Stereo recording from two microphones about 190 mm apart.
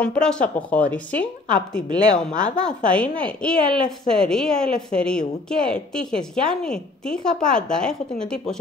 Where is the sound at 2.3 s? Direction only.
40° left (ahead or behind).